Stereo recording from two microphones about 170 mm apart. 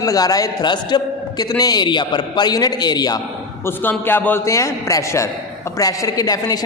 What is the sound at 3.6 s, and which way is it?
A man's voice, 10° left (ahead or behind).